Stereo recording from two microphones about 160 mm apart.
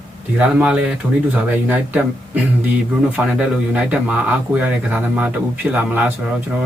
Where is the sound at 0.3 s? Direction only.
5° right (ahead or behind).